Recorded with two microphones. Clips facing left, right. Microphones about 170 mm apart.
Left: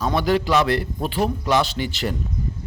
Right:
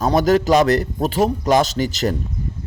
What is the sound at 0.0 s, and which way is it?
A man's voice, 45° right (ahead or behind).